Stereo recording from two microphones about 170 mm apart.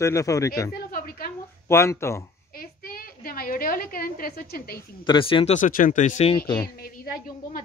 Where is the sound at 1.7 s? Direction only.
15° left (ahead or behind).